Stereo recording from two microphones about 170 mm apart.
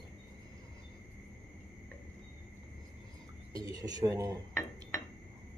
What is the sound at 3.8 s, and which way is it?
Speech, 25° right (ahead or behind).